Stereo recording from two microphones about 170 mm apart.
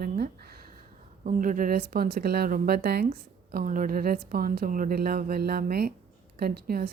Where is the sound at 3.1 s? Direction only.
55° right (ahead or behind).